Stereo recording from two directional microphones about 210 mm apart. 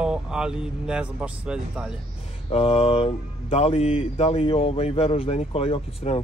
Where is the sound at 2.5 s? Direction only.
25° left (ahead or behind).